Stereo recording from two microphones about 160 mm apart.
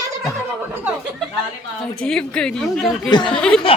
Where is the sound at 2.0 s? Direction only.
5° left (ahead or behind).